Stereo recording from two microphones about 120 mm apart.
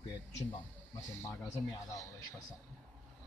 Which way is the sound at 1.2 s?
25° left (ahead or behind).